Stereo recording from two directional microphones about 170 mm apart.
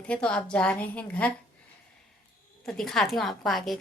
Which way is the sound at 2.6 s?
5° left (ahead or behind).